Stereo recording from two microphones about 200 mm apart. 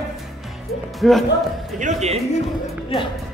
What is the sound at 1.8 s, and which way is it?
Speech, 35° right (ahead or behind).